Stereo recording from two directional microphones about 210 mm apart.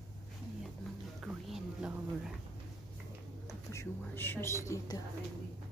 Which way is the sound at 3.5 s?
15° left (ahead or behind).